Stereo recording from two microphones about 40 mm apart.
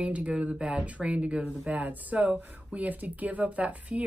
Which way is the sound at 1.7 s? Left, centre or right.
Right.